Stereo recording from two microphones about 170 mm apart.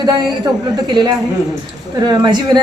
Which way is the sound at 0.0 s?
25° right (ahead or behind).